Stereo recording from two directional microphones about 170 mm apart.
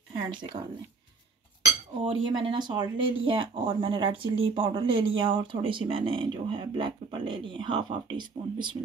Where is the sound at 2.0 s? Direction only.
30° right (ahead or behind).